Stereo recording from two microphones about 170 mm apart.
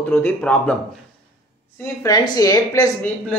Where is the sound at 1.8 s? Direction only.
20° left (ahead or behind).